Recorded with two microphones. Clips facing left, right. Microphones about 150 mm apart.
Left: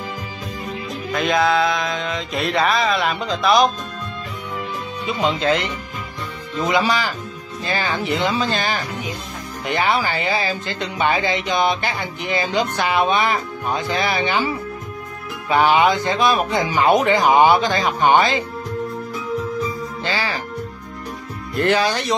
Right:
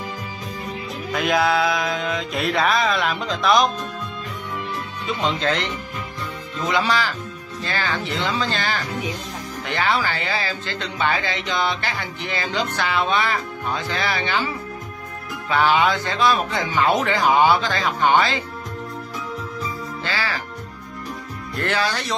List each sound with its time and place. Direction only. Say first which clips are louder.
1.1 s music: left 2 dB; 5° right (ahead or behind)
6.6 s a man's voice: left 2 dB; 10° left (ahead or behind)
15.5 s a man's voice: left 3 dB; 15° left (ahead or behind)
20.1 s speech: left 3 dB; 20° left (ahead or behind)
21.5 s a man's voice: left 5 dB; 15° left (ahead or behind)